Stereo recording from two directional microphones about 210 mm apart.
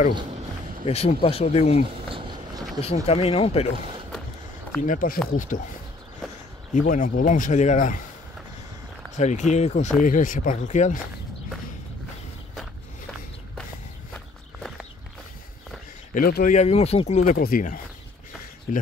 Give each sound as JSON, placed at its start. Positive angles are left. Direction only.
{"t": 0.8, "sound": "speech", "side_deg": 30}
{"t": 2.0, "sound": "a sound", "side_deg": -25}
{"t": 2.8, "sound": "speech", "side_deg": 30}
{"t": 4.8, "sound": "speech", "side_deg": 40}
{"t": 6.7, "sound": "speech", "side_deg": 40}
{"t": 9.1, "sound": "speech", "side_deg": 35}
{"t": 14.1, "sound": "walk", "side_deg": 0}
{"t": 16.2, "sound": "speech", "side_deg": 45}